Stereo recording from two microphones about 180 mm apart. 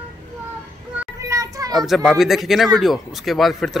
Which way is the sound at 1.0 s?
15° right (ahead or behind).